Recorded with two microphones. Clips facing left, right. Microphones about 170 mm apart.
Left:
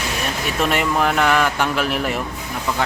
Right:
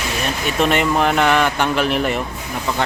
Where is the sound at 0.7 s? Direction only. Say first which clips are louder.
Right 1 dB; centre (ahead or behind).